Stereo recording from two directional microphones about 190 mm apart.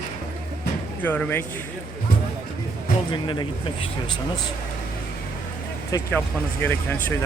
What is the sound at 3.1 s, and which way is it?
Speech, 25° left (ahead or behind).